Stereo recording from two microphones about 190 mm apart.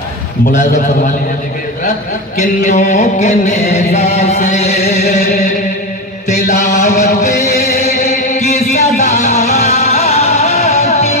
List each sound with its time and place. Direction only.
2.6 s chant: 40° left (ahead or behind)
6.2 s chant: 40° left (ahead or behind)
7.7 s music: 40° left (ahead or behind)